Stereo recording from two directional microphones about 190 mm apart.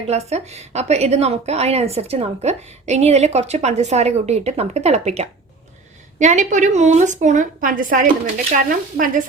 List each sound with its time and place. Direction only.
0.1 s a woman's voice: 35° right (ahead or behind)